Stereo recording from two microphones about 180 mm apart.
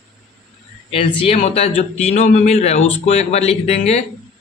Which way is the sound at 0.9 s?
30° left (ahead or behind).